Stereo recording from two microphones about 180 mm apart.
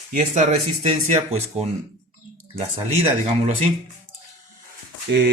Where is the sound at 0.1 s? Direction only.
40° right (ahead or behind).